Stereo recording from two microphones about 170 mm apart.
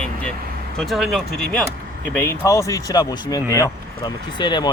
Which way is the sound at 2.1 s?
15° left (ahead or behind).